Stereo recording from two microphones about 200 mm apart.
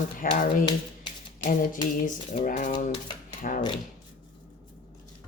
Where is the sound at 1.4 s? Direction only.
45° left (ahead or behind).